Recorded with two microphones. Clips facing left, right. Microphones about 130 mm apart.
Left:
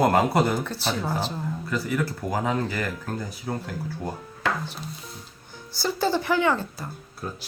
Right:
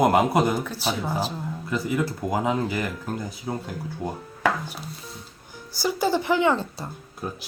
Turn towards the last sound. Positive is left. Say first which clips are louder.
# right 2 dB
turn(degrees=-20)  # may be behind; listen again after turning